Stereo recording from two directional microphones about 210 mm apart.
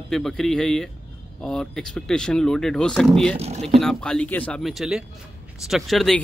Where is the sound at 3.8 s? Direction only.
Centre (ahead or behind).